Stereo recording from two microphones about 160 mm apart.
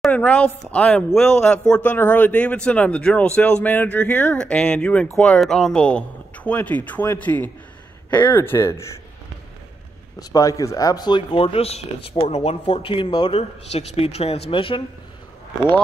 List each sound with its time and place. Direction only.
0.0 s speech: 5° left (ahead or behind)
10.1 s speech: 20° left (ahead or behind)